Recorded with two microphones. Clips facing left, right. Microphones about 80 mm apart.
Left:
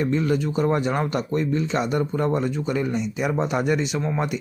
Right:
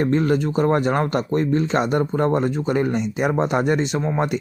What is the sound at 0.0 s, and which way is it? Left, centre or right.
Speech, right.